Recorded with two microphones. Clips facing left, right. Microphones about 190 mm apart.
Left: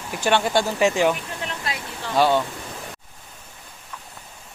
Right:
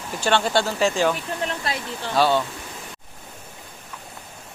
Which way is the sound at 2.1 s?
15° left (ahead or behind).